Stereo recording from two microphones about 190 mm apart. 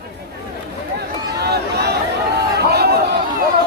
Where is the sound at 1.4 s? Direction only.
55° right (ahead or behind).